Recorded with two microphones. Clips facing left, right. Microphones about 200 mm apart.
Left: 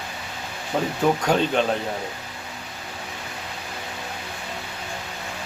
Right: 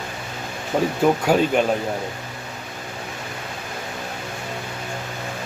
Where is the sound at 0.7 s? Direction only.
10° right (ahead or behind).